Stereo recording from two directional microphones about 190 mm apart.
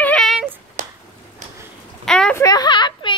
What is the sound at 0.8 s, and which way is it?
Finger snapping, 45° right (ahead or behind).